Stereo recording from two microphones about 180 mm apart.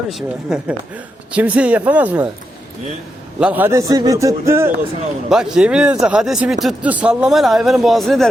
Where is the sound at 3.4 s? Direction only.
10° right (ahead or behind).